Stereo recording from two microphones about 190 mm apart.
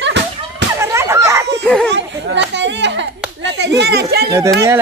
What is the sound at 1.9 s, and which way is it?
Children playing, 65° right (ahead or behind).